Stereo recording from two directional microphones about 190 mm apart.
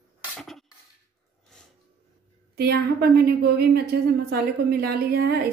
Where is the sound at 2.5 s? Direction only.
55° right (ahead or behind).